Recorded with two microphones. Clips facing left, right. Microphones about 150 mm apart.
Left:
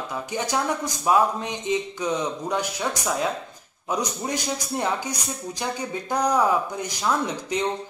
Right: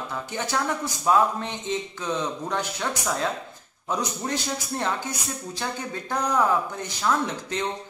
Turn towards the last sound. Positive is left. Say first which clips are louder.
# left 1 dB
turn(degrees=15)  # may be behind; listen again after turning